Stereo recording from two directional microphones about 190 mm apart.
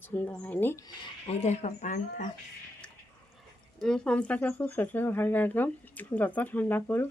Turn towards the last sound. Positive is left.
turn(degrees=10)  # may be behind; listen again after turning